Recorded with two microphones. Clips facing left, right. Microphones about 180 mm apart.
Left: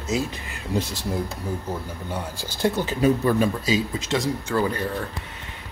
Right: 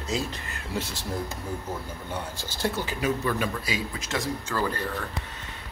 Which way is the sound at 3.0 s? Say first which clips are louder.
Left 8 dB; 30° left (ahead or behind).